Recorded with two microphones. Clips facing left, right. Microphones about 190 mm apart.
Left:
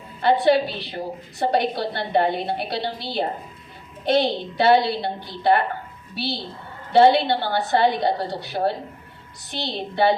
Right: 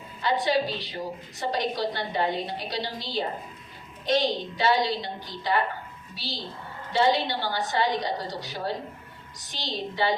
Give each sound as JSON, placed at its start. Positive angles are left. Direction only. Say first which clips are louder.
{"t": 0.2, "sound": "a woman's voice", "louder": "left 7 dB", "side_deg": 60}
{"t": 6.9, "sound": "a woman's voice", "louder": "left 8 dB", "side_deg": 60}